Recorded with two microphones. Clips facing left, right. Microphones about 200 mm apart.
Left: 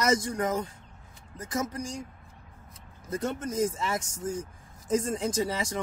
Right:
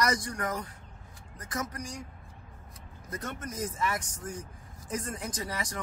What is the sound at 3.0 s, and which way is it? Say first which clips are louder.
Speech: left 7 dB; 30° left (ahead or behind).